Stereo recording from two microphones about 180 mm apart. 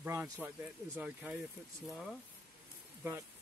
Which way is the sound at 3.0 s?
10° right (ahead or behind).